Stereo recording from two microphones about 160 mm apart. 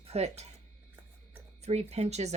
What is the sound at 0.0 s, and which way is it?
Speech, 40° right (ahead or behind).